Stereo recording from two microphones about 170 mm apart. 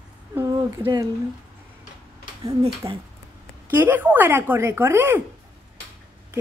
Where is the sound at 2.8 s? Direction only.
20° right (ahead or behind).